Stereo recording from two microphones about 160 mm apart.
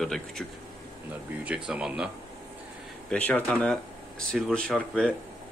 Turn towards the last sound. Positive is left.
turn(degrees=-5)  # may be behind; listen again after turning